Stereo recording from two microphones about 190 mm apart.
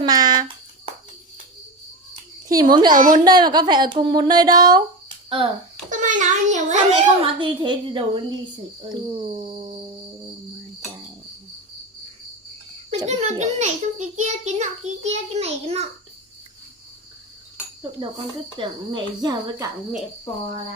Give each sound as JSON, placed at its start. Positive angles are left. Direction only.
{"t": 0.0, "sound": "a sound", "side_deg": -20}
{"t": 2.5, "sound": "speech", "side_deg": -20}
{"t": 2.9, "sound": "a woman's voice", "side_deg": -45}
{"t": 3.2, "sound": "speech", "side_deg": -20}
{"t": 5.9, "sound": "a child's voice", "side_deg": -40}
{"t": 13.1, "sound": "a child's voice", "side_deg": -35}
{"t": 18.5, "sound": "speech", "side_deg": -25}